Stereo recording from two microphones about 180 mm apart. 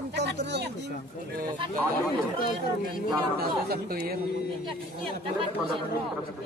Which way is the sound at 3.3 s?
60° right (ahead or behind).